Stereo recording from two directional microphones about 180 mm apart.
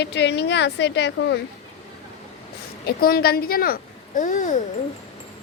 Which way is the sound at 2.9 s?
55° left (ahead or behind).